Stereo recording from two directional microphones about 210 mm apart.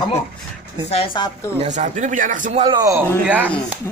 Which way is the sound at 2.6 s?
20° right (ahead or behind).